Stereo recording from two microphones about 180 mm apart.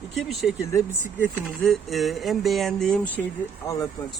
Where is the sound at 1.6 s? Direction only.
Centre (ahead or behind).